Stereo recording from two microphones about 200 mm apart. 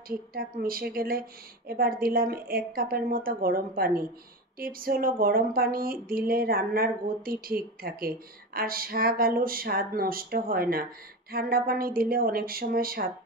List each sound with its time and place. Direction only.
0.1 s speech: 45° right (ahead or behind)